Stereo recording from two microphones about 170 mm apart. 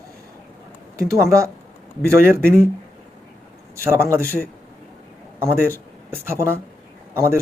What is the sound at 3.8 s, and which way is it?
A man's voice, 15° right (ahead or behind).